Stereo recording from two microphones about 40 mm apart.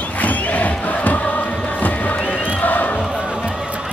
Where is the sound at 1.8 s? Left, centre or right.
Left.